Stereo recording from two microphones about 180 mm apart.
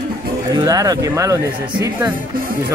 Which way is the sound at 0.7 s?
20° right (ahead or behind).